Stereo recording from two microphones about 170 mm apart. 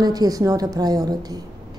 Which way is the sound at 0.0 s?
20° right (ahead or behind).